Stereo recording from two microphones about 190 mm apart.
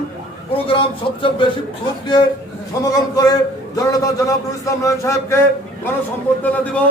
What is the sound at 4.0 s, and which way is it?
A man's voice, 15° left (ahead or behind).